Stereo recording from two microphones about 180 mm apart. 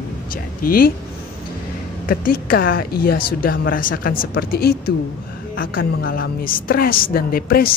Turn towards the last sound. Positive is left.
turn(degrees=55)  # may be behind; listen again after turning